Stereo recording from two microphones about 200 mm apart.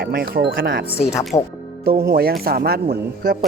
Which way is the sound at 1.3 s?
20° left (ahead or behind).